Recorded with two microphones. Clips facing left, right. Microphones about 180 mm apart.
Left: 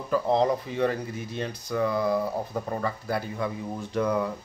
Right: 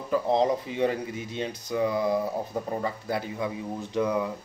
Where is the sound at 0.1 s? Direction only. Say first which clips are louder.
Even; 20° right (ahead or behind).